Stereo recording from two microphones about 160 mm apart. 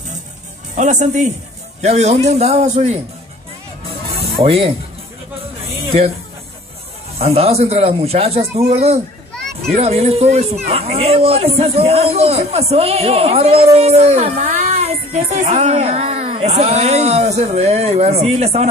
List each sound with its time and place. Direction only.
0.7 s a man's voice: 50° right (ahead or behind)
4.4 s speech: 35° right (ahead or behind)
7.2 s speech: 40° right (ahead or behind)
9.3 s children playing: 5° left (ahead or behind)
9.8 s speech: 40° right (ahead or behind)